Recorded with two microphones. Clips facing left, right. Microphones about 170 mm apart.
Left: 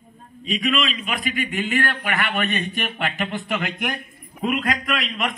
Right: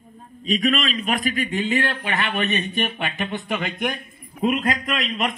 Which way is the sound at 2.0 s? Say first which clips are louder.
Even; 25° right (ahead or behind).